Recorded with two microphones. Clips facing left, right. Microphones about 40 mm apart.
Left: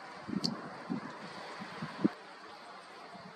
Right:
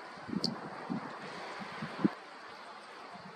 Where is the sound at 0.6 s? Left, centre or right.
Centre.